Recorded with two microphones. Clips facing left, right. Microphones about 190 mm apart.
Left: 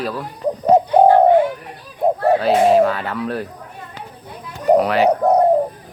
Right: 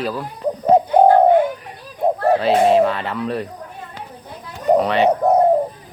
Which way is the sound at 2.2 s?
Centre (ahead or behind).